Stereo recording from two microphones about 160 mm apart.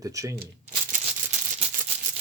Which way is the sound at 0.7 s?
45° right (ahead or behind).